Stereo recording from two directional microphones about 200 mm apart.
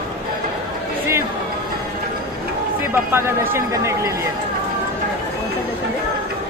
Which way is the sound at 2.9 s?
10° right (ahead or behind).